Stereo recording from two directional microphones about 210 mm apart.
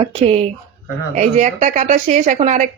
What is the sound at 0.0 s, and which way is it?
Speech, 30° right (ahead or behind).